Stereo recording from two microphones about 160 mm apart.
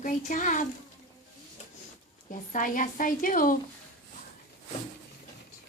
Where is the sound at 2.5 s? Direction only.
55° left (ahead or behind).